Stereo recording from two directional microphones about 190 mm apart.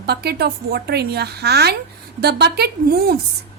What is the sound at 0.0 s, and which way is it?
Speech, 55° right (ahead or behind).